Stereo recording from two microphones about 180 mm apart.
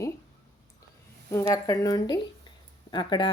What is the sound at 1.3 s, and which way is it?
Speech, 15° left (ahead or behind).